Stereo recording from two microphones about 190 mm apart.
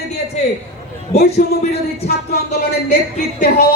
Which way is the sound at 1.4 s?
40° left (ahead or behind).